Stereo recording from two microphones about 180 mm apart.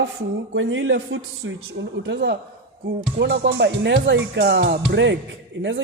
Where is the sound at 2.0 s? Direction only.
75° right (ahead or behind).